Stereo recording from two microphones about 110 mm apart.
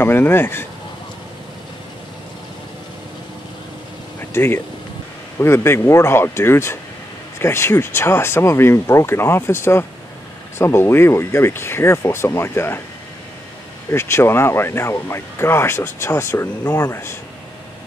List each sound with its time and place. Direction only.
0.0 s speech: 20° left (ahead or behind)
4.3 s speech: 20° left (ahead or behind)
13.9 s speech: 25° left (ahead or behind)